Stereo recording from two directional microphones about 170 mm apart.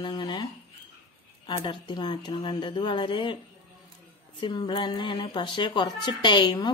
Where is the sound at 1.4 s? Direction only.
25° left (ahead or behind).